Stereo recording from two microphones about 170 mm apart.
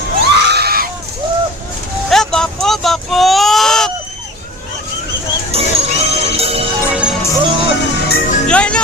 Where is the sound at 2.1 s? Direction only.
5° left (ahead or behind).